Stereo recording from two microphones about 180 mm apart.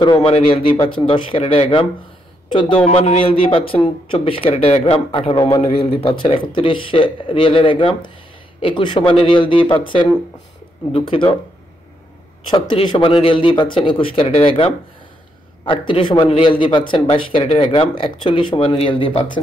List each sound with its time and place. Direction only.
0.0 s speech: 25° left (ahead or behind)
5.9 s speech: 30° left (ahead or behind)
12.4 s speech: 25° left (ahead or behind)